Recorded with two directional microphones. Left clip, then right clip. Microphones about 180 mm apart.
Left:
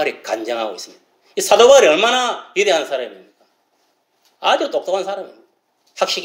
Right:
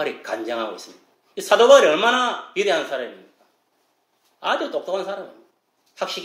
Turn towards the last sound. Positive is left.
turn(degrees=20)  # may be behind; listen again after turning